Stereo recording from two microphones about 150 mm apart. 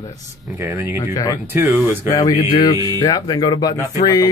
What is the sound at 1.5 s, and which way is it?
Speech, 15° right (ahead or behind).